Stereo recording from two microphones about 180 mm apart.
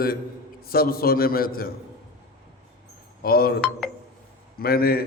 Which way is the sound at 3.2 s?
55° left (ahead or behind).